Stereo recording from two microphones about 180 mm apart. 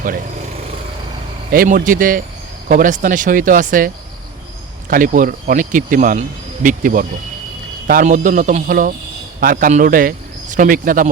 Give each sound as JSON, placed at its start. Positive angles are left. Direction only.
{"t": 0.0, "sound": "speech", "side_deg": -50}